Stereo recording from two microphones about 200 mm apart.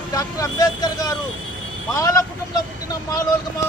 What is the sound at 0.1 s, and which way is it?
Speech, 15° left (ahead or behind).